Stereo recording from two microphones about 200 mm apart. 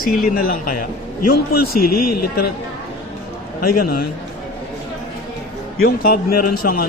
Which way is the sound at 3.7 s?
50° left (ahead or behind).